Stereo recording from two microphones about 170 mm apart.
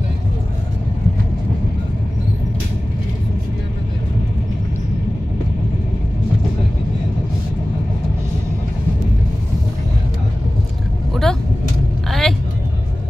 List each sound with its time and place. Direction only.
11.2 s vehicle: centre (ahead or behind)